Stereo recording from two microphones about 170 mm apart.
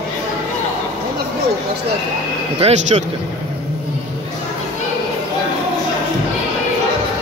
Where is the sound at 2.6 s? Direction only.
40° right (ahead or behind).